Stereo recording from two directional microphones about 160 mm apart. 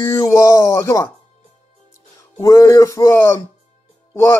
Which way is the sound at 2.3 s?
20° left (ahead or behind).